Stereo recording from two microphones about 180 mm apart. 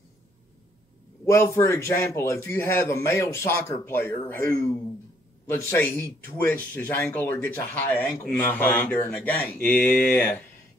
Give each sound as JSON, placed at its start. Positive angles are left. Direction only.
{"t": 1.2, "sound": "speech", "side_deg": 15}